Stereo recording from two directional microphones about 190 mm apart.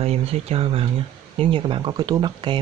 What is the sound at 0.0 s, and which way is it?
Speech, 30° right (ahead or behind).